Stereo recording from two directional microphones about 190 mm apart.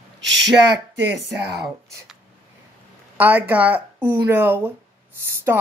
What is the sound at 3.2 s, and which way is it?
Speech, 10° right (ahead or behind).